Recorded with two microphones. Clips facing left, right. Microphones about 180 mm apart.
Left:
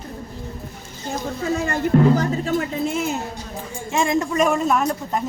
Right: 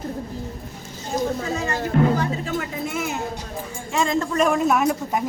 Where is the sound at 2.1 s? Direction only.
40° left (ahead or behind).